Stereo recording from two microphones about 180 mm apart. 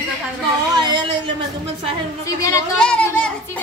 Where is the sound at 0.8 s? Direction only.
25° right (ahead or behind).